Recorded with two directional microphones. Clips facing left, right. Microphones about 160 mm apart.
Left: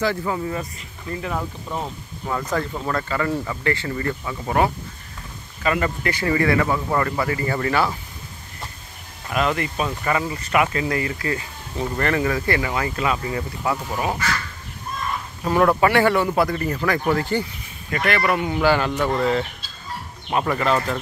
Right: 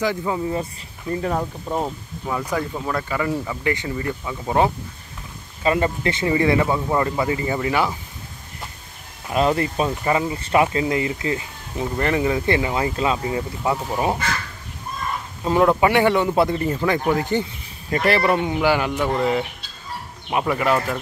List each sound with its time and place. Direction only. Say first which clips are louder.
0.0 s speech: even; 15° right (ahead or behind)
1.1 s speech: right 4 dB; 40° right (ahead or behind)
2.2 s speech: even; 10° right (ahead or behind)
5.6 s speech: right 2 dB; 25° right (ahead or behind)
9.3 s speech: right 3 dB; 30° right (ahead or behind)
15.4 s speech: right 1 dB; 20° right (ahead or behind)